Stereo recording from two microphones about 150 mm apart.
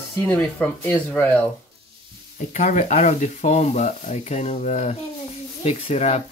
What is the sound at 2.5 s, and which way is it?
Speech, 55° left (ahead or behind).